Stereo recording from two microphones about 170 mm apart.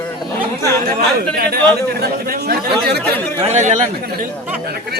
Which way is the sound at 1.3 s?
65° right (ahead or behind).